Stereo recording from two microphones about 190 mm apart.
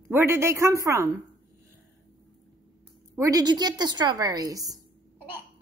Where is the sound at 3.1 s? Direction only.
15° right (ahead or behind).